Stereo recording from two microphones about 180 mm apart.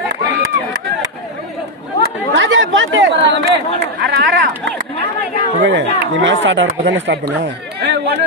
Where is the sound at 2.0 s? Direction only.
90° right.